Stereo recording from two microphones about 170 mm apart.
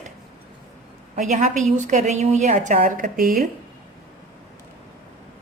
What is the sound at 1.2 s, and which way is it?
A woman's voice, 45° right (ahead or behind).